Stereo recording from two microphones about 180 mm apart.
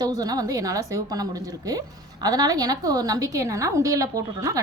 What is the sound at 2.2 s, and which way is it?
A woman's voice, 20° right (ahead or behind).